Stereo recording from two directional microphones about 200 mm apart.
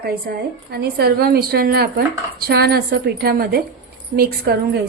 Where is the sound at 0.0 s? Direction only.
50° right (ahead or behind).